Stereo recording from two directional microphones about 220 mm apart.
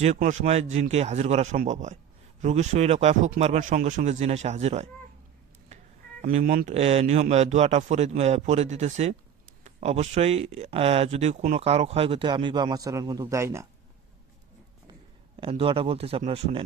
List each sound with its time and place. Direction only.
0.0 s speech: 30° right (ahead or behind)
6.2 s speech: 40° right (ahead or behind); by 13.7 s 10° right (ahead or behind)
15.4 s speech: 25° right (ahead or behind)